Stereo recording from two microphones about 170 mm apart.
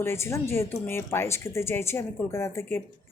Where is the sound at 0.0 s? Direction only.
15° left (ahead or behind).